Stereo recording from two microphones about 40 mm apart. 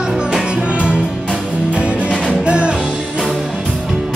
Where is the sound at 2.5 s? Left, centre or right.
Right.